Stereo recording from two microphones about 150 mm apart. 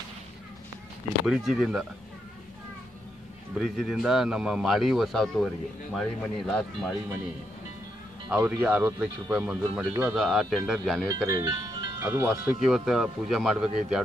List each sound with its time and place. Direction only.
1.2 s speech: centre (ahead or behind)
3.5 s speech: centre (ahead or behind)
8.3 s speech: 10° right (ahead or behind)
11.2 s speech: 30° right (ahead or behind)
12.0 s speech: 15° right (ahead or behind)
12.5 s speech: centre (ahead or behind)